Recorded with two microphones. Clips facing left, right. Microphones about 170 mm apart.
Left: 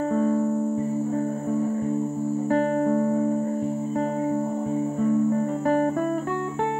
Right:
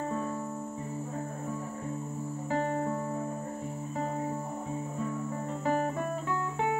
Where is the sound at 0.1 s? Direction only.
55° left (ahead or behind).